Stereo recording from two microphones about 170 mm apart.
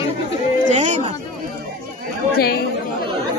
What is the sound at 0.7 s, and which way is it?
Speech, 45° right (ahead or behind).